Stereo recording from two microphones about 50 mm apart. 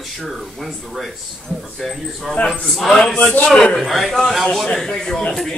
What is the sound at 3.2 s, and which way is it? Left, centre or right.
Speech, left.